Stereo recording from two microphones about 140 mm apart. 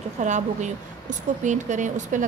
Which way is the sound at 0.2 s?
60° right (ahead or behind).